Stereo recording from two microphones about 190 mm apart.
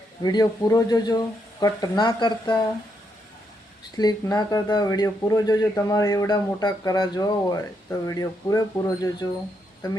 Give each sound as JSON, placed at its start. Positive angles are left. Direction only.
{"t": 0.2, "sound": "speech", "side_deg": 20}
{"t": 3.9, "sound": "speech", "side_deg": 20}